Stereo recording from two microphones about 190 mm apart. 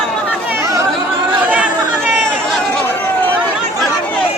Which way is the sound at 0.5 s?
15° right (ahead or behind).